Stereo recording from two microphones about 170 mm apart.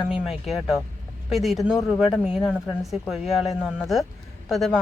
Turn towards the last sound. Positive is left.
turn(degrees=0)  # may be behind; listen again after turning